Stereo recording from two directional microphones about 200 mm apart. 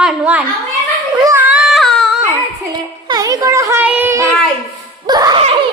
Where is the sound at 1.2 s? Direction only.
10° right (ahead or behind).